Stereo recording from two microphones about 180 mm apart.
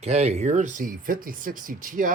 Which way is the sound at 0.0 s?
35° right (ahead or behind).